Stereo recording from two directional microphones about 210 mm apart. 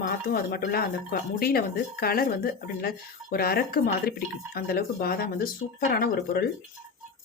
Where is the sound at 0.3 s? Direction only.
45° left (ahead or behind).